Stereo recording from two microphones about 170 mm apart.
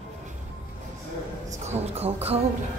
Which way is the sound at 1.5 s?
40° right (ahead or behind).